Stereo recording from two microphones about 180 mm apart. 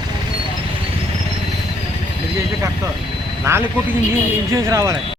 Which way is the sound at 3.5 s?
15° right (ahead or behind).